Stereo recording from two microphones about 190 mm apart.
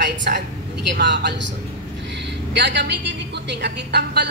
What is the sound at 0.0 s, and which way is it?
A man's voice, 65° right (ahead or behind).